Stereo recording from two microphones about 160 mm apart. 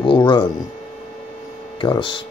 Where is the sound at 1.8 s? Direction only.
30° left (ahead or behind).